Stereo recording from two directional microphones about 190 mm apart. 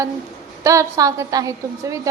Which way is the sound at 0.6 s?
15° right (ahead or behind).